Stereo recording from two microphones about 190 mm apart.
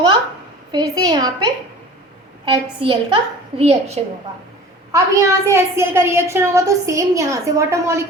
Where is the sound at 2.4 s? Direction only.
25° right (ahead or behind).